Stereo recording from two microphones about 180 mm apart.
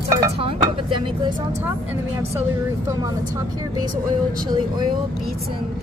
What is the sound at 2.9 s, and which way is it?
A woman's voice, 20° right (ahead or behind).